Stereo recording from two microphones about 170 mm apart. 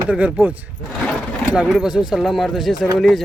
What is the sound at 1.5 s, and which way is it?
A man's voice, 5° right (ahead or behind).